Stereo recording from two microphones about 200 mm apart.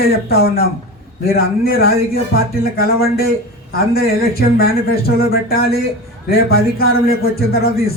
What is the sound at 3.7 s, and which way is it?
A man's voice, 50° left (ahead or behind).